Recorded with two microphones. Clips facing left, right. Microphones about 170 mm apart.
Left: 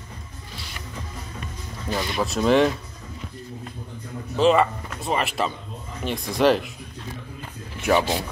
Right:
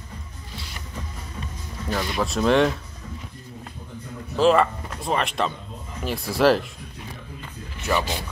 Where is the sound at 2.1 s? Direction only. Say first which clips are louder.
Left 1 dB; centre (ahead or behind).